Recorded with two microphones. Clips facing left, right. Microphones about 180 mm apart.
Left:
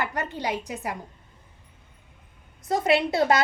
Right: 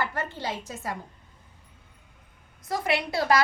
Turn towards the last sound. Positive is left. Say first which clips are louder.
# left 3 dB
turn(degrees=25)  # may be behind; listen again after turning